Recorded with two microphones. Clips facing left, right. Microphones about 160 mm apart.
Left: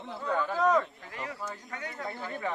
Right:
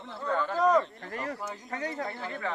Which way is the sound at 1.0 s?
45° right (ahead or behind).